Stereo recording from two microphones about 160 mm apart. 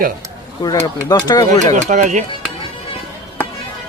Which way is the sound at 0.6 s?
25° left (ahead or behind).